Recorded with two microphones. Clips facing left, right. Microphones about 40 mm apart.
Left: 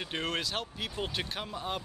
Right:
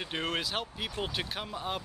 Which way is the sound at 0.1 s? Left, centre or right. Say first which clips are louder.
Right 1 dB; centre.